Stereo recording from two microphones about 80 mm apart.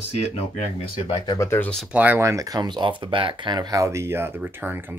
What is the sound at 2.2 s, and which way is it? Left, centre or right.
Speech, right.